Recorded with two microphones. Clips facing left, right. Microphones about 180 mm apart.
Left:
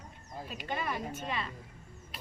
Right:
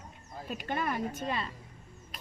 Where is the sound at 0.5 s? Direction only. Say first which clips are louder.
Right 3 dB; 50° right (ahead or behind).